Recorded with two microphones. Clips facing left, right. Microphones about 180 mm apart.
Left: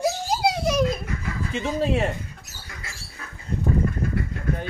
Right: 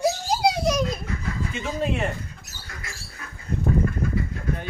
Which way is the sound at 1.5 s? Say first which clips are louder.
Left 4 dB; 30° left (ahead or behind).